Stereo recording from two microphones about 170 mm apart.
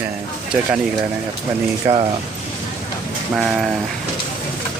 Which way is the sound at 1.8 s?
20° right (ahead or behind).